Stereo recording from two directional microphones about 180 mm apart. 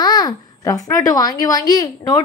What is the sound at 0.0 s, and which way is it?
A woman's voice, 20° left (ahead or behind).